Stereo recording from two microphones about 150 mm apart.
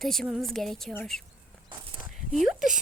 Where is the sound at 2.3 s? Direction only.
Centre (ahead or behind).